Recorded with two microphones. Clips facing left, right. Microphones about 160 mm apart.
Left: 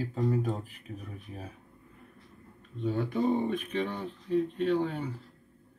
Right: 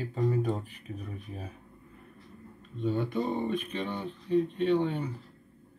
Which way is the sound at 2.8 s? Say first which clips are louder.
Left 1 dB; 5° left (ahead or behind).